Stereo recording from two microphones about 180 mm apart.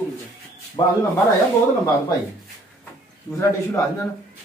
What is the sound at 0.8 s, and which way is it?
Speech, 20° left (ahead or behind).